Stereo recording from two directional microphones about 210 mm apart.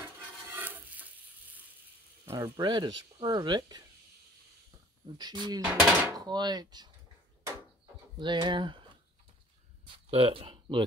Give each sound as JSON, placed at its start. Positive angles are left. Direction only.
{"t": 0.5, "sound": "stir", "side_deg": -10}
{"t": 2.2, "sound": "speech", "side_deg": -15}
{"t": 5.1, "sound": "speech", "side_deg": -20}
{"t": 5.6, "sound": "dishes", "side_deg": -5}
{"t": 6.1, "sound": "speech", "side_deg": -20}
{"t": 8.2, "sound": "speech", "side_deg": -20}
{"t": 10.0, "sound": "speech", "side_deg": -25}